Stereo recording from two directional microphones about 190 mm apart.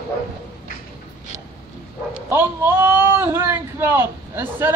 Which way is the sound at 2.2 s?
10° right (ahead or behind).